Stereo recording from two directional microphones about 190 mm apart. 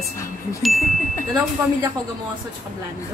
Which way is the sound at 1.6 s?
15° right (ahead or behind).